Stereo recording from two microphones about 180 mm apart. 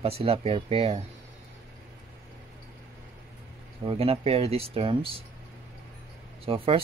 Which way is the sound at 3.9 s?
35° right (ahead or behind).